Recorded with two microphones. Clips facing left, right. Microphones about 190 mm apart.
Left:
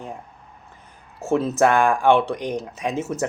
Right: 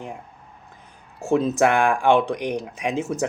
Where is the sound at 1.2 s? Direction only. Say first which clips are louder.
Even; 15° right (ahead or behind).